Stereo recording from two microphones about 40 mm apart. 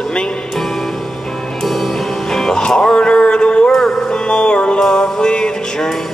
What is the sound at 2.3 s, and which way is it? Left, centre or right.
Music, centre.